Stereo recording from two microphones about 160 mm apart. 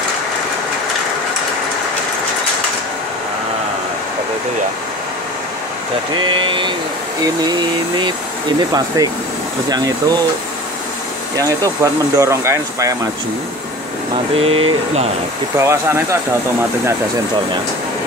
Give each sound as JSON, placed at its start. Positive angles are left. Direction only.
{"t": 6.1, "sound": "speech", "side_deg": -30}
{"t": 11.3, "sound": "speech", "side_deg": -20}
{"t": 14.1, "sound": "speech", "side_deg": -35}
{"t": 15.5, "sound": "speech", "side_deg": -20}